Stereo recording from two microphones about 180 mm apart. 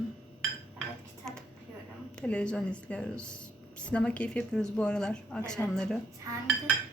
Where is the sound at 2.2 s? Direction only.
5° left (ahead or behind).